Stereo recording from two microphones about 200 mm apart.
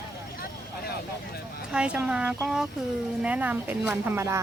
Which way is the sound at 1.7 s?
5° right (ahead or behind).